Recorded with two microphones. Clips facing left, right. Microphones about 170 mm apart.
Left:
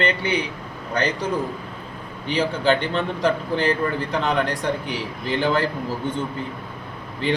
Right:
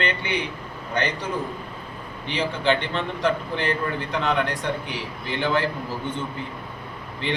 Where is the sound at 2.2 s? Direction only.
40° left (ahead or behind).